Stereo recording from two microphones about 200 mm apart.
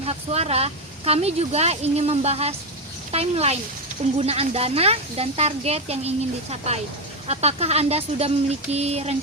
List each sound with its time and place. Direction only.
0.0 s speech: 30° right (ahead or behind)